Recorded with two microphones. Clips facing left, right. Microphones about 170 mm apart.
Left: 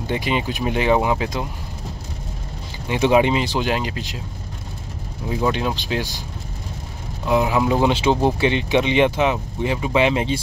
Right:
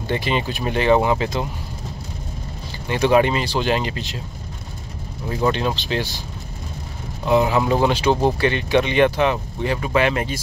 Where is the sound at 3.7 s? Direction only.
5° left (ahead or behind).